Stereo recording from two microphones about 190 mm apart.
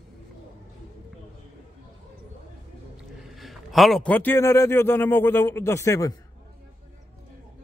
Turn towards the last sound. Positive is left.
turn(degrees=15)  # may be behind; listen again after turning